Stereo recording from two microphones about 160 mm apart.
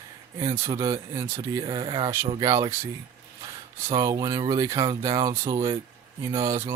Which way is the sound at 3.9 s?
20° right (ahead or behind).